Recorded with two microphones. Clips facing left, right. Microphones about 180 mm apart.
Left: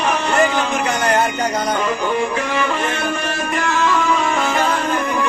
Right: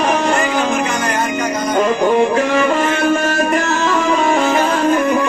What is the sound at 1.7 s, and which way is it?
Music, 40° right (ahead or behind).